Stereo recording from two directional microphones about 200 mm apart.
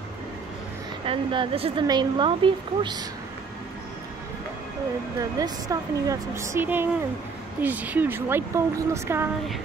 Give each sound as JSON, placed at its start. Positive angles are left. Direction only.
{"t": 1.0, "sound": "speech", "side_deg": -25}
{"t": 5.4, "sound": "speech", "side_deg": -15}